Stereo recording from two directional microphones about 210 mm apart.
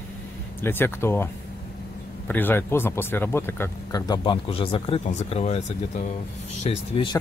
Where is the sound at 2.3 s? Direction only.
10° left (ahead or behind).